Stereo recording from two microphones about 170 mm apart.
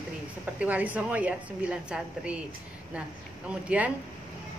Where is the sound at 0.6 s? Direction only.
10° right (ahead or behind).